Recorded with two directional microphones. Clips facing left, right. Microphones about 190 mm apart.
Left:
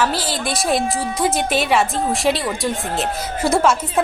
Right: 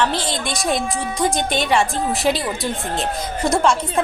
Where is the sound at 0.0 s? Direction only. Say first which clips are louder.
Even; 5° left (ahead or behind).